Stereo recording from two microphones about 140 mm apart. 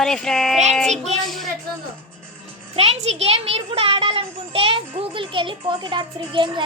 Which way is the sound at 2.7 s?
45° right (ahead or behind).